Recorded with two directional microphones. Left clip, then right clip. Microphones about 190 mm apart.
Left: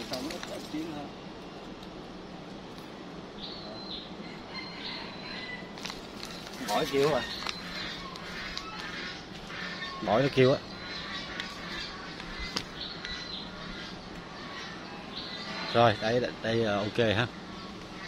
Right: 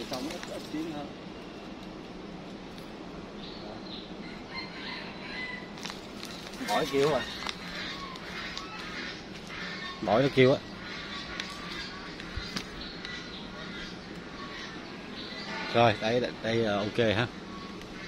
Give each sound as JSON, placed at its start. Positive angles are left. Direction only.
{"t": 6.7, "sound": "speech", "side_deg": 15}
{"t": 7.0, "sound": "speech", "side_deg": 5}
{"t": 10.0, "sound": "speech", "side_deg": -5}
{"t": 15.7, "sound": "speech", "side_deg": 0}